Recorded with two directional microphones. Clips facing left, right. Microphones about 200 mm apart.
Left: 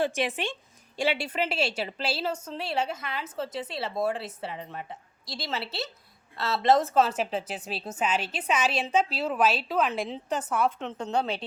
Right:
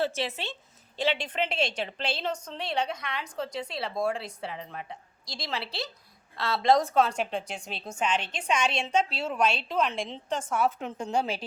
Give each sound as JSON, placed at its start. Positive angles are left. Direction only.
{"t": 0.0, "sound": "a woman's voice", "side_deg": 15}